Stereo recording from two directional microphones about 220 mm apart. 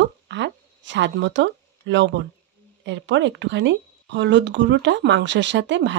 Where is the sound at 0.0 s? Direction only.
55° right (ahead or behind).